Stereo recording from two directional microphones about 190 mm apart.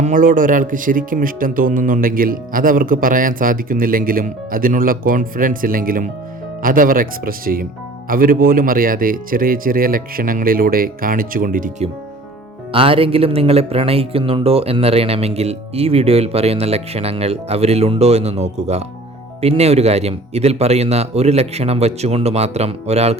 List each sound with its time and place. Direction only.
0.0 s speech: 45° right (ahead or behind)
12.7 s speech: 30° right (ahead or behind)